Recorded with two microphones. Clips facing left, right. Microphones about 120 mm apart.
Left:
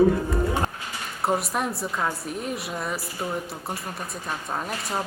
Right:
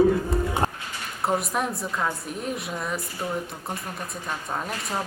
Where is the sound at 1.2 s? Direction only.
Centre (ahead or behind).